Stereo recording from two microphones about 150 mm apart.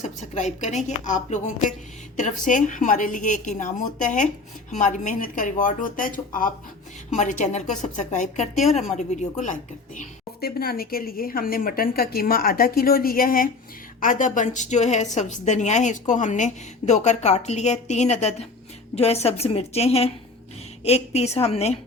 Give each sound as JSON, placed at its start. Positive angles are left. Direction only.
{"t": 0.0, "sound": "a woman's voice", "side_deg": 55}
{"t": 14.0, "sound": "a woman's voice", "side_deg": 60}